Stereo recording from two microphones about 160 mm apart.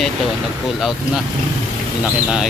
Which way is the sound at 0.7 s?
Centre (ahead or behind).